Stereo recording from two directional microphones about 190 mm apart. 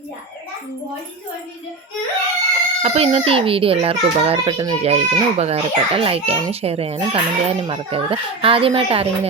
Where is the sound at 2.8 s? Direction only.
35° right (ahead or behind).